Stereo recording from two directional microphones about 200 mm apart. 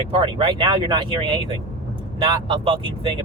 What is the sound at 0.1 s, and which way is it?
Speech, 25° right (ahead or behind).